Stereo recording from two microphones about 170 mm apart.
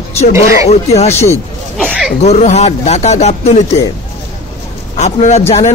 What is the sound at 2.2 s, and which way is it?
A man's voice, 45° left (ahead or behind).